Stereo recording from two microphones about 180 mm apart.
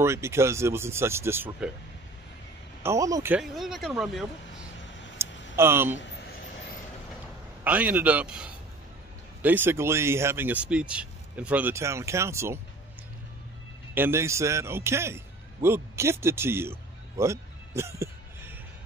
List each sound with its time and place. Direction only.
0.0 s speech: 15° right (ahead or behind)
2.8 s speech: 15° right (ahead or behind)
3.3 s speech: centre (ahead or behind)
5.2 s a sound: 15° right (ahead or behind)
5.6 s speech: 10° right (ahead or behind)
5.9 s vehicle: 70° left (ahead or behind)
7.6 s speech: 10° right (ahead or behind)
13.9 s speech: 15° right (ahead or behind)
17.2 s music: 15° right (ahead or behind)